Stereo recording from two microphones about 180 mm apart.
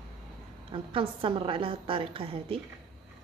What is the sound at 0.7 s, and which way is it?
A woman's voice, 30° right (ahead or behind).